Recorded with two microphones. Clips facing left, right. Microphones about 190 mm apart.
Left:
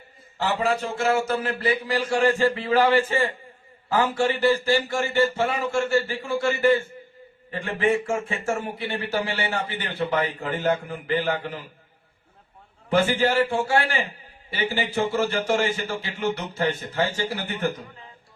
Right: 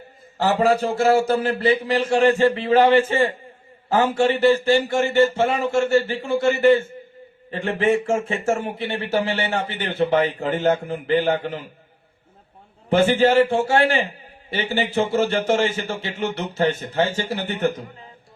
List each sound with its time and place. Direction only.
0.3 s a man's voice: 40° right (ahead or behind)
12.9 s speech: 25° right (ahead or behind)